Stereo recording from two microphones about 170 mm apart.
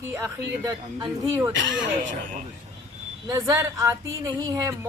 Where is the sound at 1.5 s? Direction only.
90° right.